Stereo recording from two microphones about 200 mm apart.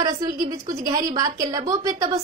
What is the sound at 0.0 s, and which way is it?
A woman's voice, 20° right (ahead or behind).